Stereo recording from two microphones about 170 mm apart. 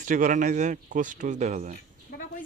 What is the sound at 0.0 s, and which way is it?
Speech, 50° right (ahead or behind).